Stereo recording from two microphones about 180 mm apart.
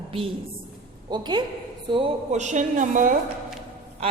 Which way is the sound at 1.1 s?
25° right (ahead or behind).